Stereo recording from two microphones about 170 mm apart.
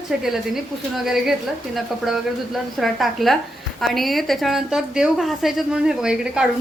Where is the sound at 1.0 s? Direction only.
Centre (ahead or behind).